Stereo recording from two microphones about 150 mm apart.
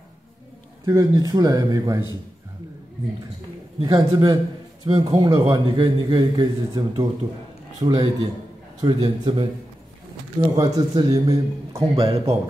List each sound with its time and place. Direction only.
0.8 s a man's voice: 25° right (ahead or behind)
3.8 s a man's voice: 25° right (ahead or behind)
10.5 s a man's voice: 25° right (ahead or behind)
11.9 s a man's voice: 40° right (ahead or behind)